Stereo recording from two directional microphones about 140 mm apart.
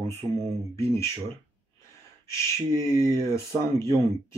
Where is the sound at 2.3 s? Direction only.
20° left (ahead or behind).